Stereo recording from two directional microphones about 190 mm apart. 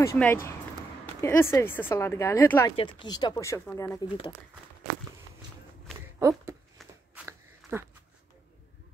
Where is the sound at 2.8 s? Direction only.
25° left (ahead or behind).